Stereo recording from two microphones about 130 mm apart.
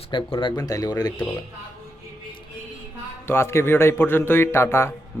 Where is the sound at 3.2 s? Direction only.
20° left (ahead or behind).